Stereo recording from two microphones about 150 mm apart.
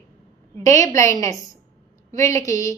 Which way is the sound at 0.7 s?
55° right (ahead or behind).